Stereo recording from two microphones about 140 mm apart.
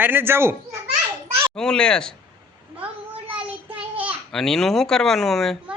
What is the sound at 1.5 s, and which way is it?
Speech, 5° left (ahead or behind).